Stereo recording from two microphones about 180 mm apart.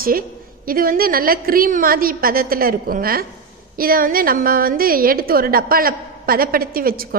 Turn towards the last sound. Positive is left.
turn(degrees=-55)  # may be behind; listen again after turning